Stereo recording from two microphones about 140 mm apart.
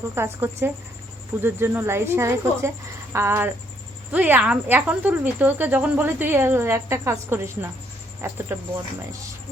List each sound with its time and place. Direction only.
0.1 s speech: 15° right (ahead or behind)